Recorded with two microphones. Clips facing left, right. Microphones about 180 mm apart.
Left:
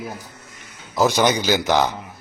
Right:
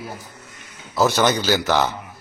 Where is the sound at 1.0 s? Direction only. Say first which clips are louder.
Even; 15° left (ahead or behind).